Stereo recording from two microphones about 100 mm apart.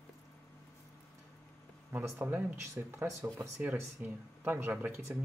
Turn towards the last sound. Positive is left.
turn(degrees=-15)  # may be behind; listen again after turning